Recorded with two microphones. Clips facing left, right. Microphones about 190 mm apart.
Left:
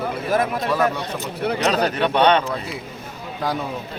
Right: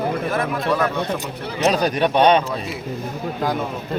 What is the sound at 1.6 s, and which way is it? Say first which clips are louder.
Speech: right 4 dB; 15° right (ahead or behind).